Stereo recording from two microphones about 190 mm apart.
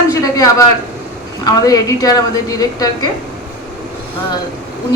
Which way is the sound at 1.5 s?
20° left (ahead or behind).